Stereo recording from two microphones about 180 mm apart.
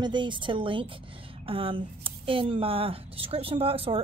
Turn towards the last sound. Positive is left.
turn(degrees=-30)  # may be behind; listen again after turning